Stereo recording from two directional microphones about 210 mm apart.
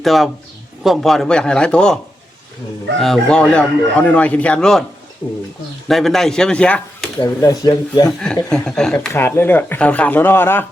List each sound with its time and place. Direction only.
0.0 s speech: centre (ahead or behind)
3.0 s speech: 5° left (ahead or behind)
5.9 s speech: centre (ahead or behind)
7.2 s speech: 20° left (ahead or behind)
8.4 s speech: 5° left (ahead or behind)